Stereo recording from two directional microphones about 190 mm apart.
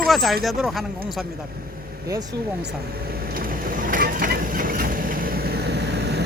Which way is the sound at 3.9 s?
50° right (ahead or behind).